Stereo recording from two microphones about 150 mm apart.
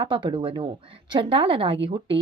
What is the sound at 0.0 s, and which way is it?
A woman's voice, 30° right (ahead or behind).